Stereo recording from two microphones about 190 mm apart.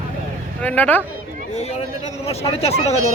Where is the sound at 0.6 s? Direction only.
10° left (ahead or behind).